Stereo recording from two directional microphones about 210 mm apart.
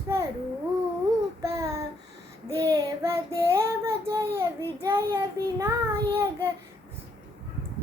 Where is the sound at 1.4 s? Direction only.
15° right (ahead or behind).